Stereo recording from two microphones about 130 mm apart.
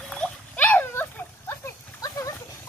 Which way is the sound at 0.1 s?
10° left (ahead or behind).